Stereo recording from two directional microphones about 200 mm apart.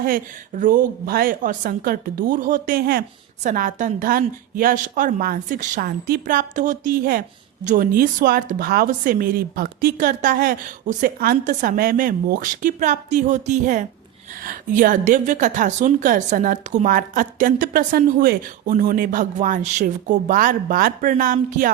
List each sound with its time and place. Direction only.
0.0 s a woman's voice: 45° right (ahead or behind)